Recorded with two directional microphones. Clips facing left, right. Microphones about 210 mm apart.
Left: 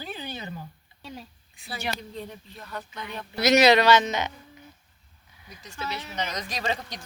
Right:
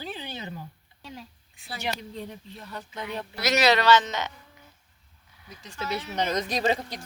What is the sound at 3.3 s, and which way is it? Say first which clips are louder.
Speech: left 5 dB; 20° left (ahead or behind).